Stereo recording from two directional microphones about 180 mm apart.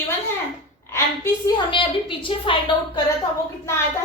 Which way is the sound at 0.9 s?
15° left (ahead or behind).